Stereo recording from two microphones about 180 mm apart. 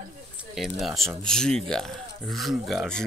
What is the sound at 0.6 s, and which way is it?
Speech, centre (ahead or behind).